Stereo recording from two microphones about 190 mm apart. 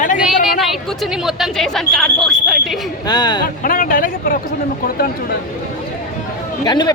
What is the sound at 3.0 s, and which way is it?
Speech, 20° left (ahead or behind).